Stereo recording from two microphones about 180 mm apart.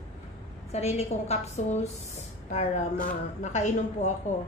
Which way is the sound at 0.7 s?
35° left (ahead or behind).